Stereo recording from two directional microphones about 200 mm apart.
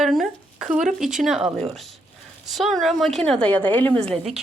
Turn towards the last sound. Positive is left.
turn(degrees=0)  # may be behind; listen again after turning